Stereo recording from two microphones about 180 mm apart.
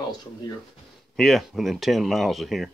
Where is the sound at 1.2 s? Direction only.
Centre (ahead or behind).